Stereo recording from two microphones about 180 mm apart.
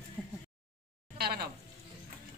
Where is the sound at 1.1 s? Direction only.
60° right (ahead or behind).